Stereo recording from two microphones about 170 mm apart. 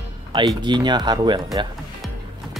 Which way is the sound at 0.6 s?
25° right (ahead or behind).